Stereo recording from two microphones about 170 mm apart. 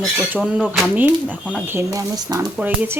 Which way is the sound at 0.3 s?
5° right (ahead or behind).